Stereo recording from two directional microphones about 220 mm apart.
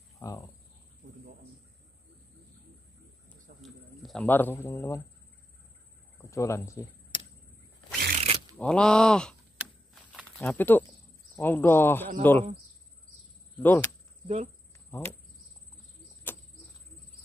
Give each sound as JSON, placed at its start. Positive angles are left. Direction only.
{"t": 0.2, "sound": "speech", "side_deg": 15}
{"t": 3.6, "sound": "speech", "side_deg": 0}
{"t": 6.3, "sound": "speech", "side_deg": 15}
{"t": 8.2, "sound": "a sound", "side_deg": -25}
{"t": 8.5, "sound": "speech", "side_deg": 5}
{"t": 13.6, "sound": "speech", "side_deg": 10}
{"t": 14.2, "sound": "speech", "side_deg": -30}
{"t": 14.9, "sound": "speech", "side_deg": 10}
{"t": 16.3, "sound": "a sound", "side_deg": 10}